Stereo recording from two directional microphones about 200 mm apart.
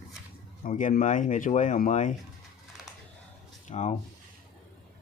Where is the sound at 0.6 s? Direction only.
40° left (ahead or behind).